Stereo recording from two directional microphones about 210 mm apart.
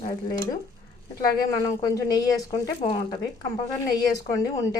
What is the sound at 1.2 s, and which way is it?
A woman's voice, 15° left (ahead or behind).